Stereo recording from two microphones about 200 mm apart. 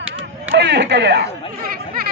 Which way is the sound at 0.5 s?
60° right (ahead or behind).